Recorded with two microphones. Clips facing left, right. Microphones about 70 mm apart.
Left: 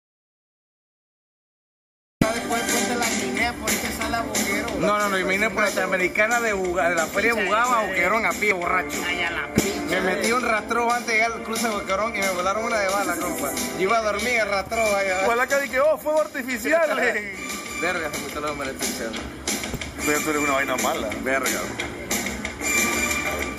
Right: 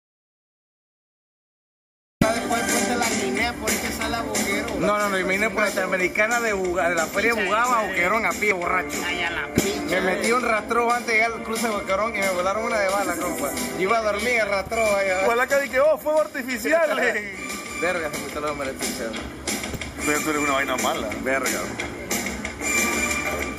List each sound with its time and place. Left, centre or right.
2.1 s speech: centre
9.3 s music: centre
9.6 s speech: centre
10.4 s speech: right
12.2 s speech: centre
18.6 s music: centre